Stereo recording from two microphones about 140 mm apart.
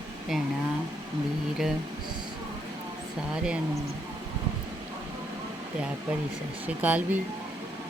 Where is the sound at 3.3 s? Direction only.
5° right (ahead or behind).